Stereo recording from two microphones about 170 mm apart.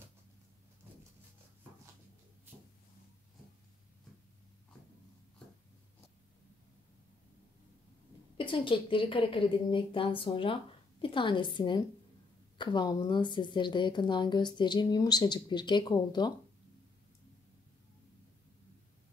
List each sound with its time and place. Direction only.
8.4 s a woman's voice: 30° left (ahead or behind)